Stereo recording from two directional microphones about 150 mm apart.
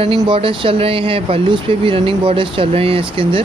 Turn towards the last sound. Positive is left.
turn(degrees=-40)  # may be behind; listen again after turning